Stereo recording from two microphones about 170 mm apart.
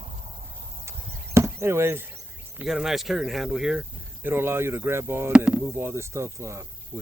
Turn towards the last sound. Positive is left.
turn(degrees=-15)  # may be behind; listen again after turning